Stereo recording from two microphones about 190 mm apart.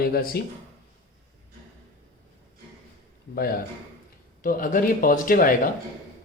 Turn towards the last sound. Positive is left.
turn(degrees=45)  # may be behind; listen again after turning